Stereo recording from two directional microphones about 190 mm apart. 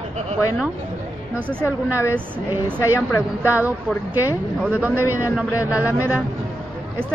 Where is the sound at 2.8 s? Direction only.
15° left (ahead or behind).